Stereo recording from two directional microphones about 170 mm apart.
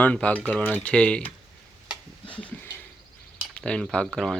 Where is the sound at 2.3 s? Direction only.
10° left (ahead or behind).